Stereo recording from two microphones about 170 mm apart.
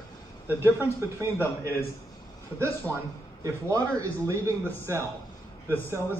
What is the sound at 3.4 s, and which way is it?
A man's voice, 20° right (ahead or behind).